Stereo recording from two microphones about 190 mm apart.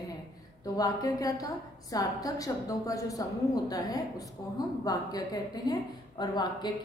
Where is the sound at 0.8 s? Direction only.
20° left (ahead or behind).